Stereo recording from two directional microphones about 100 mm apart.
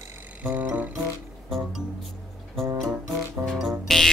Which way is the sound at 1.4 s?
Centre (ahead or behind).